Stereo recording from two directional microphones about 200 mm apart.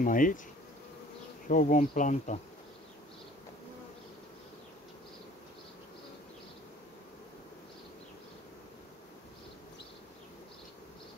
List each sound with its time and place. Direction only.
0.0 s bee: 40° left (ahead or behind)
1.5 s bee: 40° left (ahead or behind)